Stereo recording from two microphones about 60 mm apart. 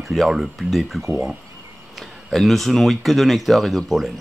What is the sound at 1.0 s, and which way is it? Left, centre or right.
Speech, right.